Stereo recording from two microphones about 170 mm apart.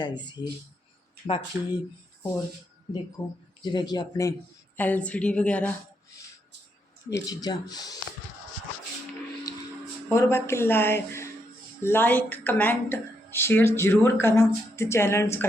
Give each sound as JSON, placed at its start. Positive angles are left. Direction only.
{"t": 0.0, "sound": "speech", "side_deg": 25}
{"t": 1.5, "sound": "speech", "side_deg": -10}
{"t": 3.2, "sound": "speech", "side_deg": 20}
{"t": 4.8, "sound": "a woman's voice", "side_deg": 10}
{"t": 7.1, "sound": "speech", "side_deg": 20}
{"t": 10.2, "sound": "a woman's voice", "side_deg": 15}